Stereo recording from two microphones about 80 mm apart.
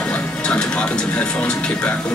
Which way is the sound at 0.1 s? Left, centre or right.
Centre.